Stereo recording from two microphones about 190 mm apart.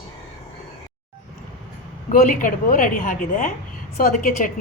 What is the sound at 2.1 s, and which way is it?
A woman's voice, 45° left (ahead or behind).